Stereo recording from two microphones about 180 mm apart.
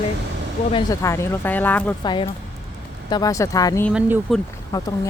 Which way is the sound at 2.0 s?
25° left (ahead or behind).